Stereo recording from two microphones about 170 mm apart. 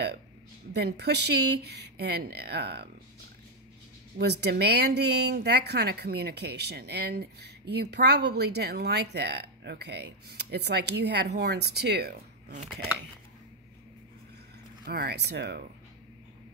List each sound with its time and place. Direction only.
0.7 s speech: 75° right (ahead or behind)
4.2 s speech: 75° right (ahead or behind)
14.9 s speech: 70° right (ahead or behind)